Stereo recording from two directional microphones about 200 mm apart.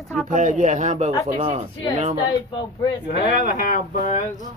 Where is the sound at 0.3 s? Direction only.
40° right (ahead or behind).